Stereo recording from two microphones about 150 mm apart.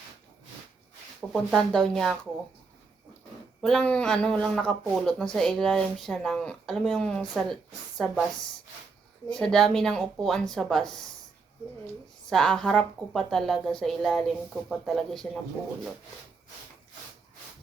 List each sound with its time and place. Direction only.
1.3 s speech: centre (ahead or behind)
3.6 s speech: 5° left (ahead or behind)
9.3 s speech: 5° left (ahead or behind)
12.3 s speech: 5° left (ahead or behind)